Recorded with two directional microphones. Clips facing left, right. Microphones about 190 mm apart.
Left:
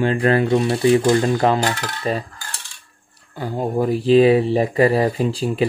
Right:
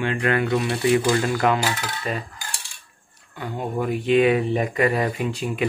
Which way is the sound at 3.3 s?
35° left (ahead or behind).